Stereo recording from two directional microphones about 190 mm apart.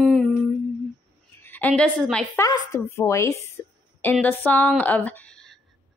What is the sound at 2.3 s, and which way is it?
Female singing, 15° left (ahead or behind).